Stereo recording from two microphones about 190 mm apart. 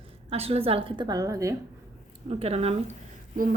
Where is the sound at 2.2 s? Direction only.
30° right (ahead or behind).